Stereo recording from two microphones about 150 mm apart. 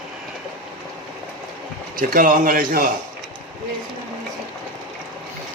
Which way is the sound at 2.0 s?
70° right (ahead or behind).